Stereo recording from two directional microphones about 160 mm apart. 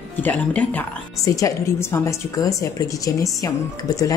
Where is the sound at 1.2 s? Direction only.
20° left (ahead or behind).